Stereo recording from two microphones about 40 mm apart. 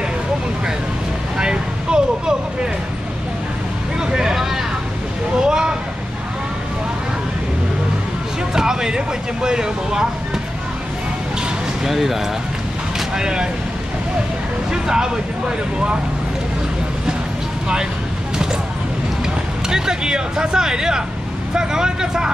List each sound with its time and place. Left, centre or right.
1.4 s vehicle: right
4.0 s vehicle: centre
5.4 s a sound: centre
8.5 s speech: centre
11.8 s speech: centre
13.1 s speech: centre
14.7 s speech: centre
19.7 s speech: centre